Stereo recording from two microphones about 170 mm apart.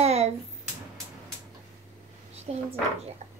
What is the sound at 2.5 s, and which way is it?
Speech, 40° right (ahead or behind).